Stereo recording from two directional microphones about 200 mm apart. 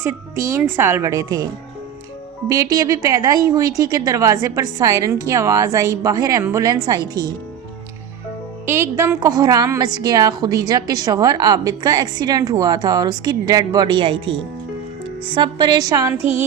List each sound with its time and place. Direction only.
0.0 s a woman's voice: 15° right (ahead or behind)
2.5 s a woman's voice: 15° right (ahead or behind)
8.6 s a woman's voice: 10° right (ahead or behind)